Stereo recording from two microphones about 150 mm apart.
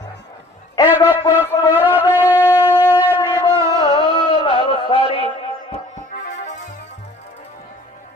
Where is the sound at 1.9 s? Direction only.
15° right (ahead or behind).